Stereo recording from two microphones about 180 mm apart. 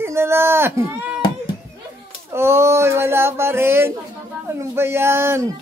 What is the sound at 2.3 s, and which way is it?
Speech, 15° right (ahead or behind).